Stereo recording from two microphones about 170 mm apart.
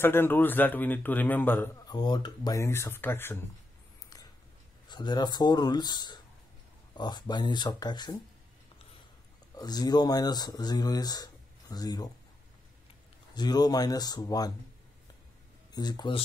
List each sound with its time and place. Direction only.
0.0 s a man's voice: 15° left (ahead or behind)
1.9 s a man's voice: 25° left (ahead or behind)
4.8 s speech: 25° left (ahead or behind)
9.6 s speech: 25° left (ahead or behind)
13.3 s speech: 25° left (ahead or behind)
15.7 s speech: 25° left (ahead or behind)